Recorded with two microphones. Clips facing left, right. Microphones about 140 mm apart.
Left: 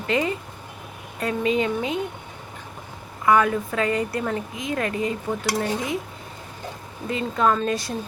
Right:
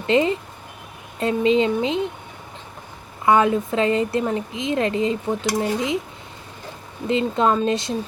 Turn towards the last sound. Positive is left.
turn(degrees=-25)  # may be behind; listen again after turning